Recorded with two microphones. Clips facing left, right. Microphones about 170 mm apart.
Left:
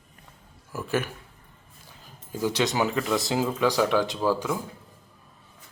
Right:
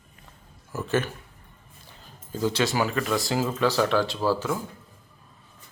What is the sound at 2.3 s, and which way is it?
Speech, 15° left (ahead or behind).